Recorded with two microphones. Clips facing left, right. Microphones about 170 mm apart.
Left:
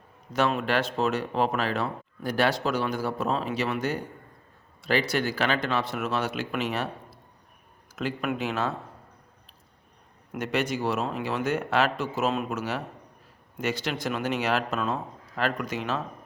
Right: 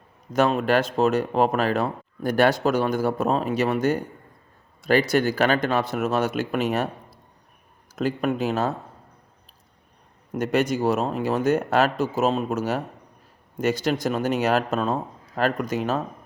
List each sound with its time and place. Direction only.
0.3 s speech: 45° right (ahead or behind)
10.3 s speech: 45° right (ahead or behind)